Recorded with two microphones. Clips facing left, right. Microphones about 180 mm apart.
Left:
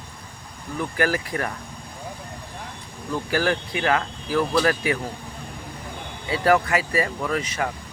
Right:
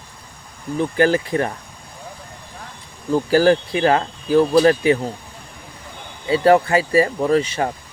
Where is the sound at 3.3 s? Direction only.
30° right (ahead or behind).